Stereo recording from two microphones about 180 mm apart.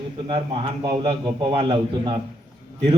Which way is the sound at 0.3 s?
30° right (ahead or behind).